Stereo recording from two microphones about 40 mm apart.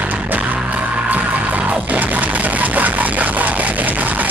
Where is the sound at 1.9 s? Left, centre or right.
Right.